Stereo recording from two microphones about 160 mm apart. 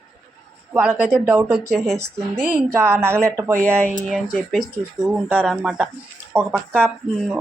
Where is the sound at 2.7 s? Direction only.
15° right (ahead or behind).